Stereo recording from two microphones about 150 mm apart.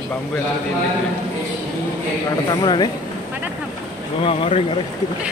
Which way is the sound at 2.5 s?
30° left (ahead or behind).